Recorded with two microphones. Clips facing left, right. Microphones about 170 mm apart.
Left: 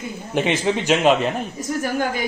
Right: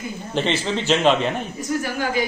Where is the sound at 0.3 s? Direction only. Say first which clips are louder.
Left 3 dB; 15° left (ahead or behind).